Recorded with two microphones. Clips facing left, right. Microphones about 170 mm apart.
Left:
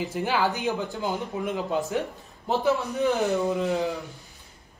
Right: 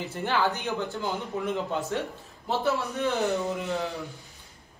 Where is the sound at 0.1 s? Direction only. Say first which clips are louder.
Right 1 dB; 15° left (ahead or behind).